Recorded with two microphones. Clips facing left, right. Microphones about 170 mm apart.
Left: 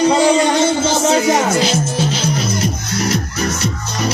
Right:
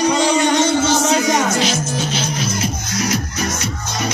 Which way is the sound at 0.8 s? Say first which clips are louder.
Left 2 dB; 30° left (ahead or behind).